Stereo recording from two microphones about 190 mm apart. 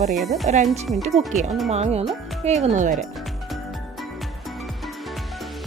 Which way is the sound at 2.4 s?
35° right (ahead or behind).